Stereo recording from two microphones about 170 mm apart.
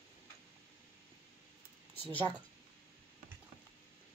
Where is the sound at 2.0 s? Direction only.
10° left (ahead or behind).